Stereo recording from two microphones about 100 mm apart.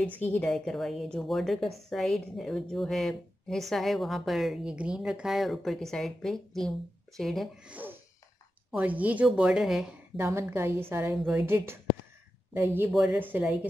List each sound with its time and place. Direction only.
0.0 s a woman's voice: 20° left (ahead or behind)
0.4 s a woman's voice: 5° left (ahead or behind)
7.6 s a woman's voice: 15° right (ahead or behind)
10.1 s a woman's voice: 25° right (ahead or behind)
12.9 s a woman's voice: 5° right (ahead or behind)
13.2 s a woman's voice: 15° right (ahead or behind)